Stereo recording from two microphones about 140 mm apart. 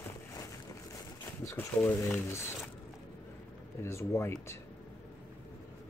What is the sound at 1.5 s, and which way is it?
Speech, 15° left (ahead or behind).